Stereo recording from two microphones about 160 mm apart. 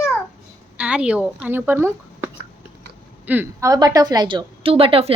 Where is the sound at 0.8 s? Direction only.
5° right (ahead or behind).